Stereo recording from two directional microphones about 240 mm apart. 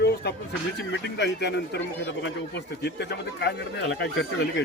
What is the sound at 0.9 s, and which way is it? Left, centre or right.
Speech, left.